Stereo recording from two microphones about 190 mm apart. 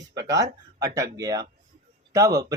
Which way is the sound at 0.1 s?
20° right (ahead or behind).